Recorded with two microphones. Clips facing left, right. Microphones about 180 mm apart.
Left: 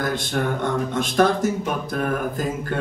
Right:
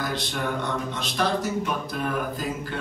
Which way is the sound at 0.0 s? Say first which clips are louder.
Left 5 dB; 50° left (ahead or behind).